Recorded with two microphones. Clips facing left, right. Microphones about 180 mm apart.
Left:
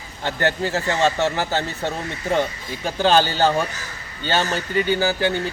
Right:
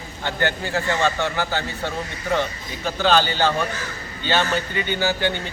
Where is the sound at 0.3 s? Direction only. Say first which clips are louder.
Left 2 dB; 35° left (ahead or behind).